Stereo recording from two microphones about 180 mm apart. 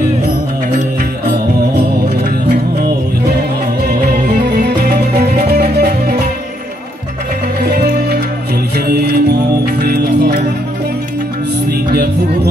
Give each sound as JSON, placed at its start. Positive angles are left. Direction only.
{"t": 3.8, "sound": "music", "side_deg": -65}
{"t": 7.7, "sound": "music", "side_deg": -60}